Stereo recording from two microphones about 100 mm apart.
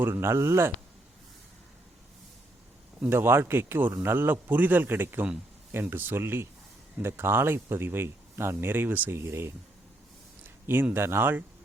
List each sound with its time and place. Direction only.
0.0 s speech: 25° right (ahead or behind)
3.0 s speech: 20° right (ahead or behind)
10.7 s speech: 20° right (ahead or behind)